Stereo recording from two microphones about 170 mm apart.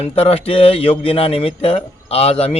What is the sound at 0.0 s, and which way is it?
A man's voice, 35° left (ahead or behind).